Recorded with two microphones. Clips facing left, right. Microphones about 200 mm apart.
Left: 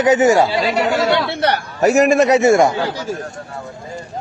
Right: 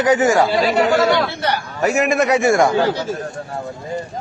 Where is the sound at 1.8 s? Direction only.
40° left (ahead or behind); by 2.7 s 20° left (ahead or behind).